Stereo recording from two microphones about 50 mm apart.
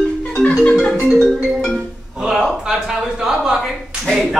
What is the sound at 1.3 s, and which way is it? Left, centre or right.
Music, centre.